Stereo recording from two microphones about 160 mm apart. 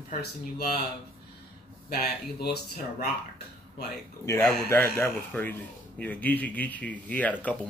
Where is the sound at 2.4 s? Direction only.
75° left (ahead or behind).